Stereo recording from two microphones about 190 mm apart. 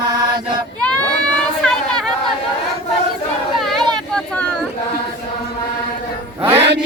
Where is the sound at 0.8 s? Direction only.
5° left (ahead or behind).